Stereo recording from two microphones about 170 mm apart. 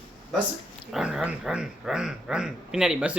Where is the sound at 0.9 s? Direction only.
5° right (ahead or behind).